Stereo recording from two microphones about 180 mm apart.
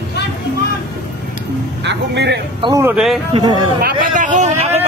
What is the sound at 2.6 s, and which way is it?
Speech, 20° right (ahead or behind).